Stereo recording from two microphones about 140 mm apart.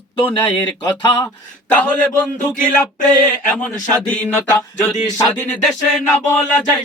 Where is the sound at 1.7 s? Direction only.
10° left (ahead or behind).